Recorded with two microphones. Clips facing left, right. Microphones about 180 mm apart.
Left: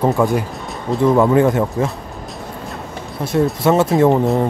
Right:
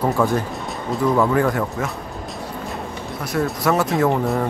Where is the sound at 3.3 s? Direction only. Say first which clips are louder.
Left 5 dB; 25° left (ahead or behind).